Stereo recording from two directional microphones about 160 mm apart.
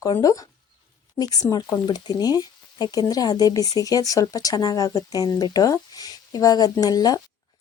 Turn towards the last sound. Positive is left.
turn(degrees=25)  # may be behind; listen again after turning